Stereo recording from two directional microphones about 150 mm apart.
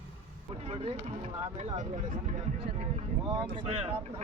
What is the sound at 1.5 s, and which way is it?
Speech, 50° right (ahead or behind).